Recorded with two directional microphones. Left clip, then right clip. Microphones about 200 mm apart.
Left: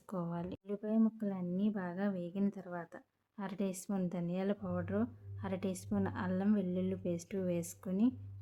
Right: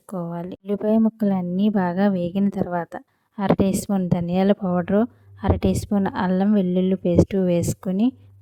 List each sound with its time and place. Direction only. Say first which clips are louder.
0.1 s speech: right 11 dB; 30° right (ahead or behind)
0.6 s a woman's voice: right 16 dB; 50° right (ahead or behind)